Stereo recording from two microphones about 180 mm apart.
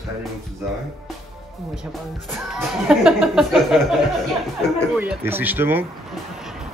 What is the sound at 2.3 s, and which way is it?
Speech, centre (ahead or behind).